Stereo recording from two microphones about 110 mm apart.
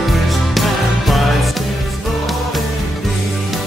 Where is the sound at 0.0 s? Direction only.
Centre (ahead or behind).